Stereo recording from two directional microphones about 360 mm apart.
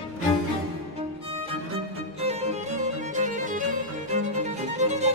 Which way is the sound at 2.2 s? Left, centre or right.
Centre.